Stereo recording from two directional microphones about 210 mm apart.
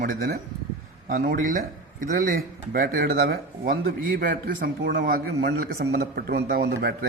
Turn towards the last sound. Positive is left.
turn(degrees=-50)  # may be behind; listen again after turning